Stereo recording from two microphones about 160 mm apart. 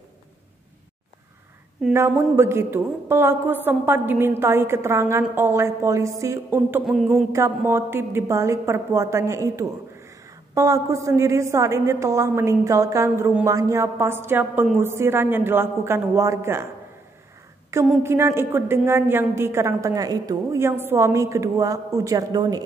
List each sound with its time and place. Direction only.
2.0 s a woman's voice: 15° right (ahead or behind)
17.7 s a woman's voice: 20° right (ahead or behind)